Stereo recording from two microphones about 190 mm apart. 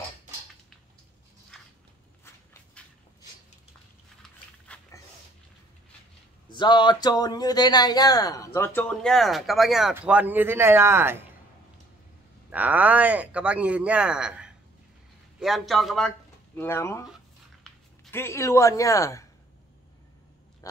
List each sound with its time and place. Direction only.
6.5 s speech: 25° left (ahead or behind); by 11.1 s 10° right (ahead or behind)
12.4 s a man's voice: 10° right (ahead or behind)
16.5 s speech: 15° left (ahead or behind)
18.1 s speech: 15° left (ahead or behind)